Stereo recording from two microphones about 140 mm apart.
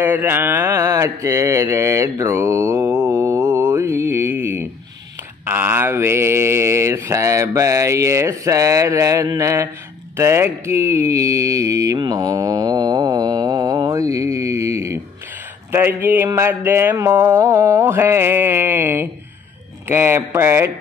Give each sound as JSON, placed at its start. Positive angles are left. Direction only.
{"t": 0.0, "sound": "a sound", "side_deg": -15}
{"t": 5.4, "sound": "speech", "side_deg": -15}
{"t": 15.7, "sound": "mantra", "side_deg": -15}